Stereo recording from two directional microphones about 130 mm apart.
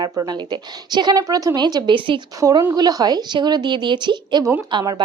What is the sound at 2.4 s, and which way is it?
A woman's voice, 30° right (ahead or behind).